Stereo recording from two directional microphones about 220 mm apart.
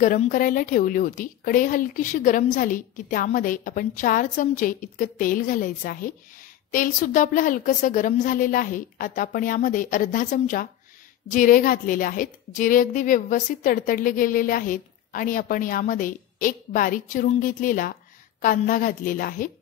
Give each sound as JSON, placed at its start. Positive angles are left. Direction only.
{"t": 0.0, "sound": "a woman's voice", "side_deg": 35}